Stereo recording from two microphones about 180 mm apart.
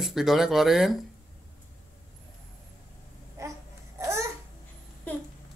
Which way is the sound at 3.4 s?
15° right (ahead or behind).